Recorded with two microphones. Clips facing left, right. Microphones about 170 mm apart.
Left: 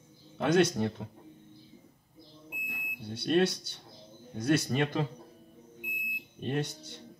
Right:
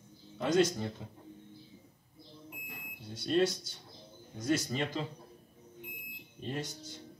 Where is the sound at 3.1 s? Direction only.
65° left (ahead or behind).